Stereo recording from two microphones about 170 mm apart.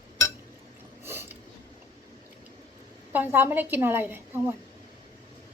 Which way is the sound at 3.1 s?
10° right (ahead or behind).